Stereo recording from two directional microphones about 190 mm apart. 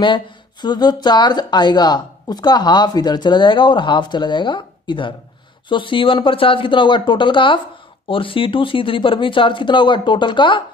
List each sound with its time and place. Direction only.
0.0 s a woman's voice: 25° left (ahead or behind)